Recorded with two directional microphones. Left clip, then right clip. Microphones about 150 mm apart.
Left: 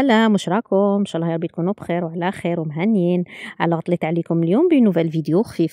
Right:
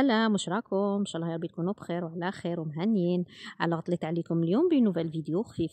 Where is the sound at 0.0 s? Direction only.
60° left (ahead or behind); by 4.9 s 40° left (ahead or behind).